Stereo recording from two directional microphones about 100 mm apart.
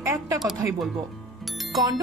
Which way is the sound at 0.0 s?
25° right (ahead or behind).